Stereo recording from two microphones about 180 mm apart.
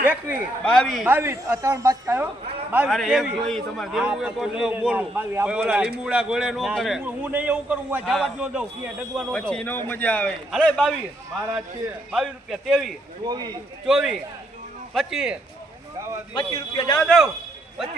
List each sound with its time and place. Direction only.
0.0 s speech: 10° right (ahead or behind)
0.6 s a man's voice: 5° left (ahead or behind)
1.0 s speech: 10° right (ahead or behind)
2.7 s a man's voice: 5° right (ahead or behind)
12.1 s a man's voice: centre (ahead or behind)
13.2 s speech: 25° right (ahead or behind)
13.8 s a man's voice: 5° right (ahead or behind)
16.3 s a man's voice: 30° left (ahead or behind)